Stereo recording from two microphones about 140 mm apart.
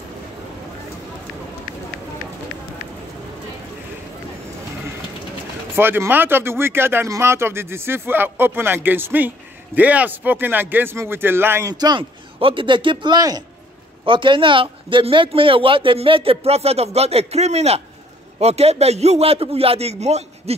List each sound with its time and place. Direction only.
5.8 s speech: 15° right (ahead or behind)
11.7 s a man's voice: 30° right (ahead or behind); by 20.5 s 50° right (ahead or behind)